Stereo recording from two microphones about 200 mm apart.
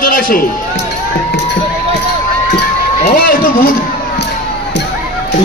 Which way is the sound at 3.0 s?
45° left (ahead or behind).